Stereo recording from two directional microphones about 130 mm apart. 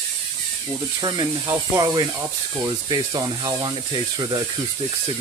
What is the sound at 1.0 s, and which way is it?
Speech, 30° right (ahead or behind).